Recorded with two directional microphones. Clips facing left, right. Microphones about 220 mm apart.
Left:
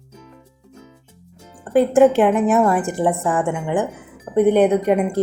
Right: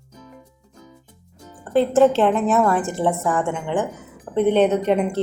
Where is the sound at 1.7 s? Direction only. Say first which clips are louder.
Left 2 dB; 15° left (ahead or behind).